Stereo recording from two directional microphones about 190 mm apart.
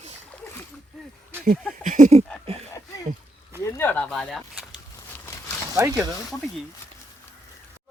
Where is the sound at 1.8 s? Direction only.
40° right (ahead or behind).